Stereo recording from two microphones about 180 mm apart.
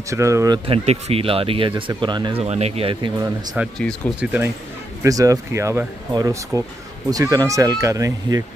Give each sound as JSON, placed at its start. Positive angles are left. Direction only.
{"t": 0.1, "sound": "speech", "side_deg": -15}
{"t": 0.7, "sound": "speech", "side_deg": -35}
{"t": 3.5, "sound": "speech", "side_deg": 5}
{"t": 4.2, "sound": "speech", "side_deg": -10}
{"t": 5.0, "sound": "speech", "side_deg": -20}